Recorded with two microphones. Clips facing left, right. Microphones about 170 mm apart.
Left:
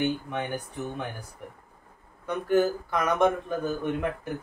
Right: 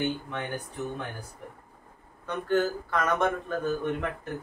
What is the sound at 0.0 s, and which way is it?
Speech, 15° left (ahead or behind).